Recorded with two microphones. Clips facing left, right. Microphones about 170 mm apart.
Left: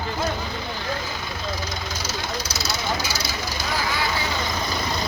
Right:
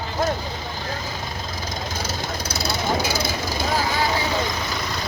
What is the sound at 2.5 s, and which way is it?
Vehicle, 55° right (ahead or behind).